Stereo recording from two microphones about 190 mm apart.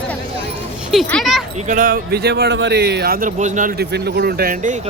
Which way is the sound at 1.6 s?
40° right (ahead or behind).